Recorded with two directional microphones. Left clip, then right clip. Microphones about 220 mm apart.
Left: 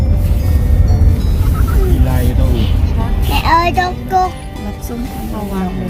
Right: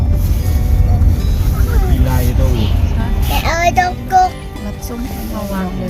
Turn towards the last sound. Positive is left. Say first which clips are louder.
# right 2 dB
turn(degrees=-15)  # may be behind; listen again after turning